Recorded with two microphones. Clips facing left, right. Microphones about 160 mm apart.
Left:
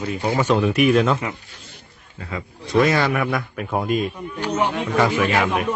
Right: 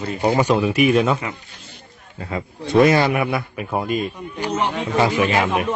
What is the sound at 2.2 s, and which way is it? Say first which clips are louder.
Speech: right 4 dB; 35° right (ahead or behind).